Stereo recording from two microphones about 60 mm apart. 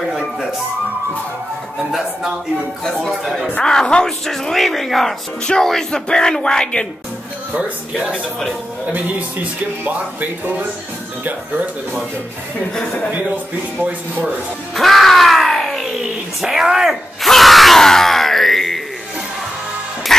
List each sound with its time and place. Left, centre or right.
0.1 s speech: centre
1.8 s a man's voice: centre
2.8 s speech: centre
3.1 s speech: centre
3.6 s speech: centre
8.9 s speech: right
14.8 s groan: centre
16.3 s speech: centre
17.3 s groan: centre
20.1 s music: centre